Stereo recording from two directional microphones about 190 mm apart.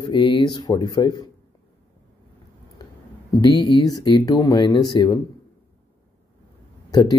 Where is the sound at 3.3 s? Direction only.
20° left (ahead or behind).